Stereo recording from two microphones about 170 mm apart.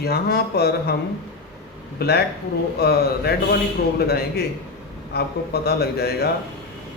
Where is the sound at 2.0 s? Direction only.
70° left (ahead or behind).